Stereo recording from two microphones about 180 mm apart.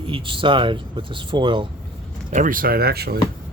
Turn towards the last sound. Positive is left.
turn(degrees=-60)  # may be behind; listen again after turning